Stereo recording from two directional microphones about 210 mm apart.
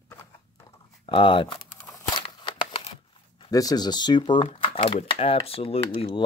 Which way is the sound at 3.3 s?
15° left (ahead or behind).